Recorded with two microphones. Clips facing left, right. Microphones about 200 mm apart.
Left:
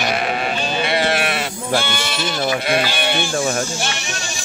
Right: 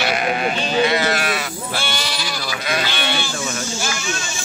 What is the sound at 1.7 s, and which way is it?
Sheep, 25° left (ahead or behind).